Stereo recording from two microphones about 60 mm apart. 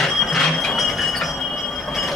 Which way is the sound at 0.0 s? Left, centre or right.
Centre.